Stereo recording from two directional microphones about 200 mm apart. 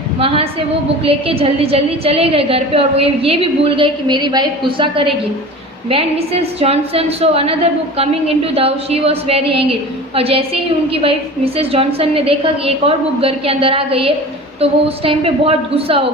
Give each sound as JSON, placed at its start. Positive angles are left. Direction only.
{"t": 0.2, "sound": "a woman's voice", "side_deg": -30}